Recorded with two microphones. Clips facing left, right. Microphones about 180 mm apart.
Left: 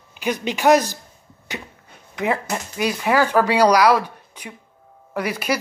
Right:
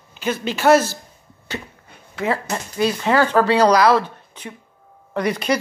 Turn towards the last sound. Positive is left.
turn(degrees=10)  # may be behind; listen again after turning